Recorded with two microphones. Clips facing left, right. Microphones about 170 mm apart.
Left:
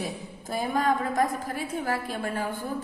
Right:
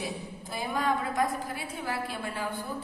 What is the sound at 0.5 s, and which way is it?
A woman's voice, 45° left (ahead or behind).